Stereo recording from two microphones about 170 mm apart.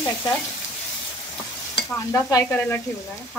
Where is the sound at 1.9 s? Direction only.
20° left (ahead or behind).